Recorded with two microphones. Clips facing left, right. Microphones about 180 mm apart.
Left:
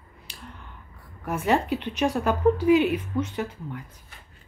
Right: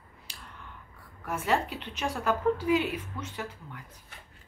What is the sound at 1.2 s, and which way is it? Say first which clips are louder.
A woman's voice: left 5 dB; 20° left (ahead or behind).